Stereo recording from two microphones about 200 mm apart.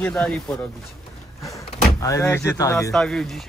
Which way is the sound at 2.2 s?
10° left (ahead or behind).